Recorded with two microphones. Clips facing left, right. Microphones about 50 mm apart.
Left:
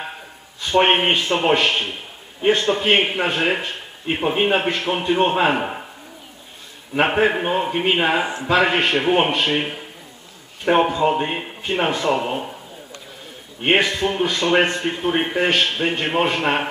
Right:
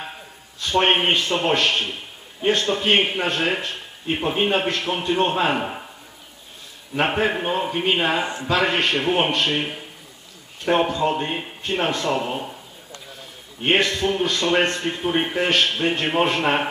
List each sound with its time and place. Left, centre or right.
0.6 s a man's voice: centre
7.0 s a man's voice: centre
13.7 s a man's voice: centre